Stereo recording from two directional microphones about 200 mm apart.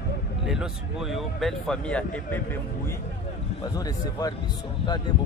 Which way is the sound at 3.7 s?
20° left (ahead or behind).